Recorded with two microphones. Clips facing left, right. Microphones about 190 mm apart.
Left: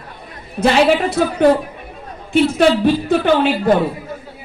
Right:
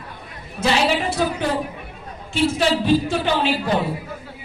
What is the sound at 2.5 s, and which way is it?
A woman's voice, 55° left (ahead or behind).